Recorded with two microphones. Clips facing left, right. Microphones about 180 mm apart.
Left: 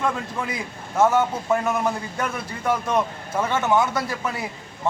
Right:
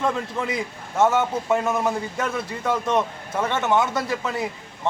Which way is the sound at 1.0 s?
Centre (ahead or behind).